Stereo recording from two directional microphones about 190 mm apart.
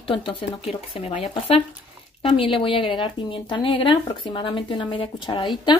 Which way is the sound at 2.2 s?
30° left (ahead or behind).